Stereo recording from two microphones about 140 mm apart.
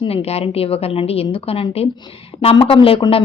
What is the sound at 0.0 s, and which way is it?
A woman's voice, 45° left (ahead or behind).